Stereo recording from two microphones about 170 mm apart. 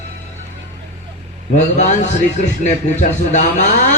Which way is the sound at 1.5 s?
45° left (ahead or behind).